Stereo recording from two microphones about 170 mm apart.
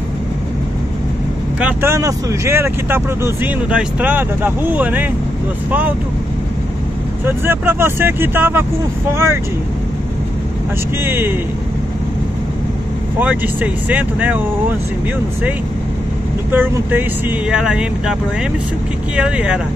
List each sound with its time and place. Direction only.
1.6 s speech: 10° right (ahead or behind)
7.2 s speech: 15° right (ahead or behind)
11.1 s speech: 15° right (ahead or behind)
13.2 s speech: 10° right (ahead or behind)
16.5 s speech: 10° right (ahead or behind)
19.1 s speech: 5° right (ahead or behind)